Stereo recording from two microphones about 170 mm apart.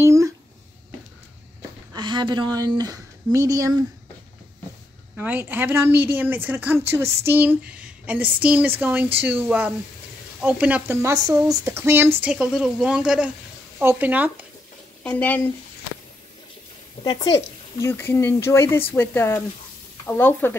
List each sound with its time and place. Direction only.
0.0 s a sound: 15° right (ahead or behind)
2.0 s speech: 25° right (ahead or behind)
5.1 s speech: 10° right (ahead or behind)
15.0 s speech: 10° left (ahead or behind)
17.0 s speech: 25° left (ahead or behind)